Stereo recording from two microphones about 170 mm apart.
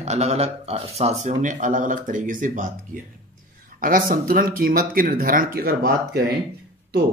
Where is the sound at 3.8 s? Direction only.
55° right (ahead or behind).